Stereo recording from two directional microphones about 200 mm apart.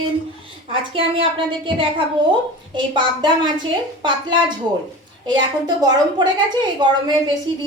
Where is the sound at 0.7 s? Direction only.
25° right (ahead or behind).